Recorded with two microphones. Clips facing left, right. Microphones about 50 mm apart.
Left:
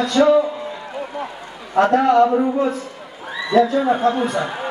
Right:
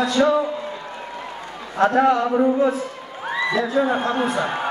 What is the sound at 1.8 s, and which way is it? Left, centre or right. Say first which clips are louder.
Speech: left 3 dB; centre.